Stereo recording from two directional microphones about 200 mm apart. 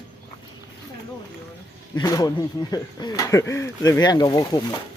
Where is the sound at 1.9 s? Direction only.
20° left (ahead or behind).